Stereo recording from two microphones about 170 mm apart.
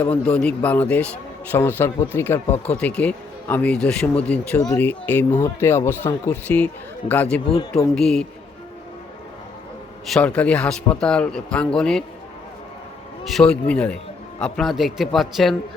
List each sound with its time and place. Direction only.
0.0 s a man's voice: 10° left (ahead or behind)
10.1 s a man's voice: 5° left (ahead or behind)
13.2 s a man's voice: centre (ahead or behind)